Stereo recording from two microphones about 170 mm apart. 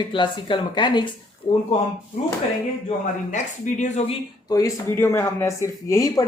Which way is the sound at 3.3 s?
45° left (ahead or behind).